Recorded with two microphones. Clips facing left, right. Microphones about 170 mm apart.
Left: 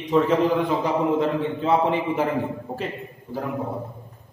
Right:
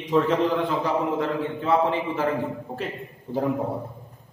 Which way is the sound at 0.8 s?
20° left (ahead or behind).